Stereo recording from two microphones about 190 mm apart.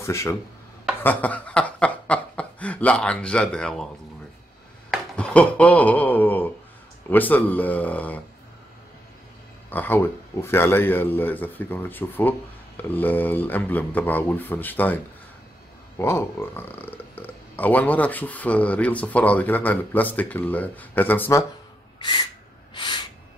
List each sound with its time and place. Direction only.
0.0 s speech: 15° left (ahead or behind)
4.9 s speech: 5° left (ahead or behind)
9.7 s speech: 10° left (ahead or behind)
16.0 s speech: 15° left (ahead or behind)
21.9 s gasp: 25° left (ahead or behind)